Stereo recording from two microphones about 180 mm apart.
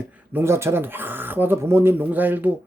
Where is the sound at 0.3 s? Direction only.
15° right (ahead or behind).